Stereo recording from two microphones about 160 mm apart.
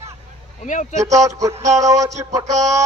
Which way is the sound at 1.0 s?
20° right (ahead or behind).